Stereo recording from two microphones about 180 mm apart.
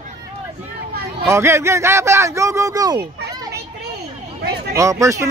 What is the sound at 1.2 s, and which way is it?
Speech, 15° right (ahead or behind).